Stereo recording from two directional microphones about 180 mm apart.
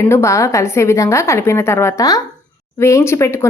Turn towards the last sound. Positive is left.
turn(degrees=15)  # may be behind; listen again after turning